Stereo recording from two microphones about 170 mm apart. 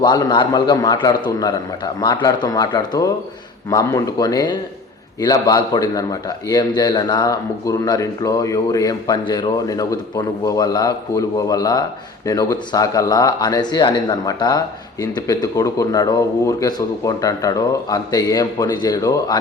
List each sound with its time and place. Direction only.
0.0 s a man's voice: 25° left (ahead or behind)